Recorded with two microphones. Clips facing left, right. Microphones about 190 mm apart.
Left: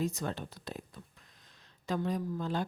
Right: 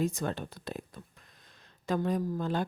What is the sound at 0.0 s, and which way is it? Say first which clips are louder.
Speech: right 3 dB; 50° right (ahead or behind).